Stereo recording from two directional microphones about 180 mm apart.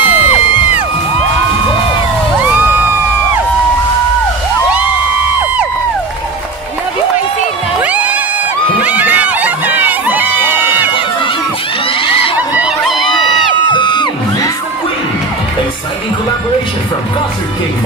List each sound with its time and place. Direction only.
0.0 s music: 10° right (ahead or behind)
2.4 s crowd: 10° right (ahead or behind)
7.8 s crowd: 10° right (ahead or behind)
11.9 s crowd: 30° left (ahead or behind)
12.4 s a sound: 5° right (ahead or behind)
13.7 s music: 25° left (ahead or behind)